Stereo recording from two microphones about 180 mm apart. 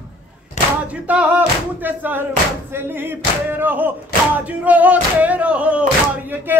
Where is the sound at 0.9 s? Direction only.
10° right (ahead or behind).